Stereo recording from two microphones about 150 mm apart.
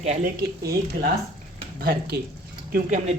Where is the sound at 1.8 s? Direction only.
90° right.